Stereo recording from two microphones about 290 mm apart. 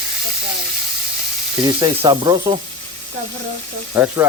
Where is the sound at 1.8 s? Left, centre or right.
Centre.